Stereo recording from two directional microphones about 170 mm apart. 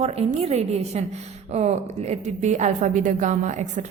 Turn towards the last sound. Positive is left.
turn(degrees=-45)  # may be behind; listen again after turning